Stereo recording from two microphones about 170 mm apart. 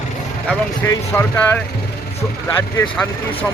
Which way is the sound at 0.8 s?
15° left (ahead or behind).